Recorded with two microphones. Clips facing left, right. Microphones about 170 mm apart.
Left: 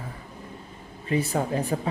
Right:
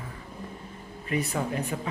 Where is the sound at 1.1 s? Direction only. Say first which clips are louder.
Left 4 dB; 30° left (ahead or behind).